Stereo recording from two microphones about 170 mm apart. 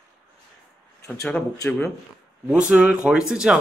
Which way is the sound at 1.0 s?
5° left (ahead or behind).